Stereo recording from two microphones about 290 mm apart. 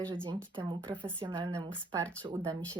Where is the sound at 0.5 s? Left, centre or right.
Centre.